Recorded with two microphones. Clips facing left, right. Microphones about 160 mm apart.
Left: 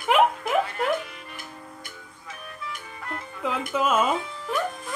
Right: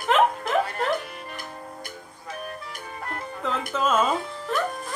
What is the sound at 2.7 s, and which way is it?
Music, 45° right (ahead or behind).